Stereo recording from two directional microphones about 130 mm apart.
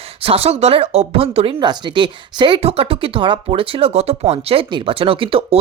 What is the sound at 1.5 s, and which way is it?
A woman's voice, 35° right (ahead or behind).